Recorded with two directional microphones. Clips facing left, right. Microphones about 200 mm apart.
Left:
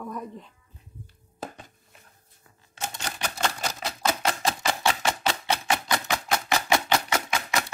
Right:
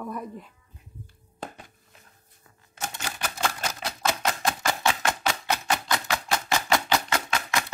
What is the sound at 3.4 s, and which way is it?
Typewriter, centre (ahead or behind).